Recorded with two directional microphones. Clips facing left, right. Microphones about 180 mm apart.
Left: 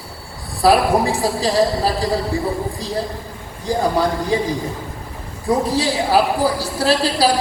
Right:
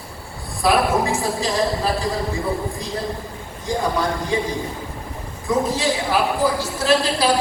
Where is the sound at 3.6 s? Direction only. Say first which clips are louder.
Left 4 dB; 35° left (ahead or behind).